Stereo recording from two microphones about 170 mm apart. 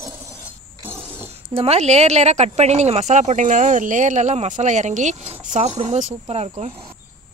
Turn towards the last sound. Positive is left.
turn(degrees=-40)  # may be behind; listen again after turning